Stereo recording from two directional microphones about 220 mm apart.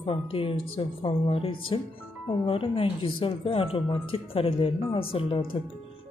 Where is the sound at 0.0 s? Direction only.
25° left (ahead or behind).